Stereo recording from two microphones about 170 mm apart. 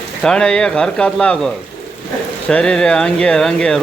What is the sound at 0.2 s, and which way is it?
Speech, 5° left (ahead or behind).